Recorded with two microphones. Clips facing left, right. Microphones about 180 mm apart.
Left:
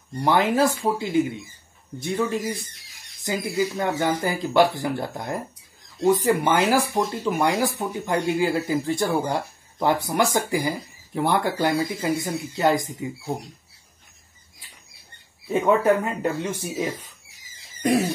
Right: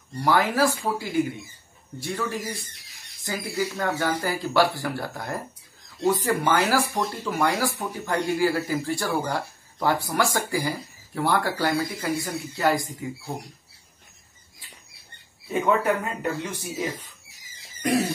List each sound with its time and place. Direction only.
0.1 s speech: 20° left (ahead or behind)
15.6 s speech: 25° left (ahead or behind)